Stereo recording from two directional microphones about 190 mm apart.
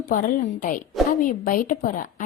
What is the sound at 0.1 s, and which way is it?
A woman's voice, 45° left (ahead or behind).